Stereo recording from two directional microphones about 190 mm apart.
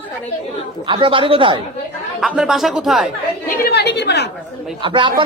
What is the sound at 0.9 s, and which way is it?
Speech, 25° right (ahead or behind).